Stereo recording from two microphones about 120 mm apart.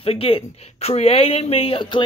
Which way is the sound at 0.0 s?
50° left (ahead or behind).